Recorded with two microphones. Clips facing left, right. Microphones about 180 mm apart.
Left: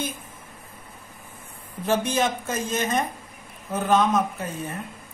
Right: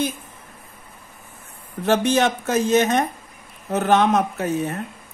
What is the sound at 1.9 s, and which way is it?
Speech, 75° right (ahead or behind).